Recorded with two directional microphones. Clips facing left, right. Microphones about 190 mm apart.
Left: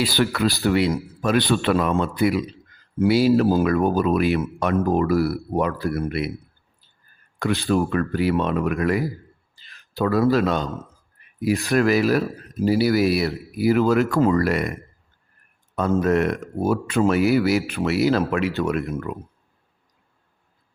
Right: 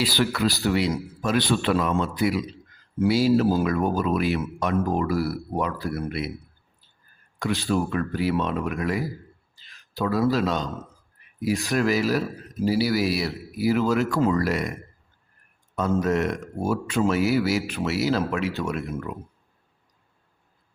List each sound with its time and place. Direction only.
0.0 s speech: 55° left (ahead or behind)
7.3 s speech: 55° left (ahead or behind)
15.7 s speech: 55° left (ahead or behind)